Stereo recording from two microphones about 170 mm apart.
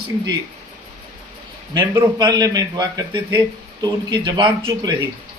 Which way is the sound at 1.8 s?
25° right (ahead or behind).